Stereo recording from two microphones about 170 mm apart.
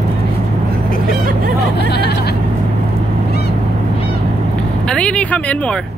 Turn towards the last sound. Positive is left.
turn(degrees=10)  # may be behind; listen again after turning